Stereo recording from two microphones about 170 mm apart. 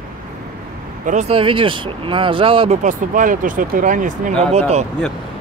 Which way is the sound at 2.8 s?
50° right (ahead or behind).